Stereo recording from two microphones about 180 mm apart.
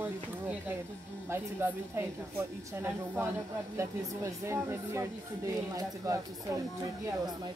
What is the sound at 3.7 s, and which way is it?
Speech, 15° right (ahead or behind).